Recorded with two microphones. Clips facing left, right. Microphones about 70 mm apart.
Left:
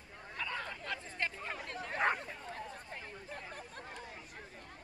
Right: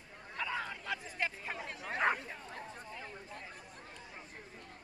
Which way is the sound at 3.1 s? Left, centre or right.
Left.